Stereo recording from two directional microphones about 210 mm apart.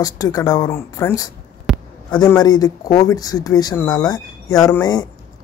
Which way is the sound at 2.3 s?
15° left (ahead or behind).